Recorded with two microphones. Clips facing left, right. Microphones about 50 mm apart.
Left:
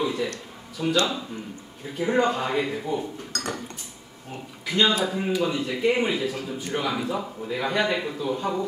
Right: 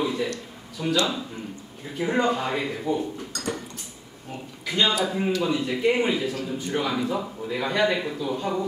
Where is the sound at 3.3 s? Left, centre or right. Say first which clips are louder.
Left 2 dB; left.